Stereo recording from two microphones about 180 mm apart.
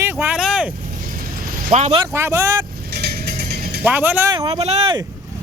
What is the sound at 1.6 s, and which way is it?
Speech, 35° right (ahead or behind).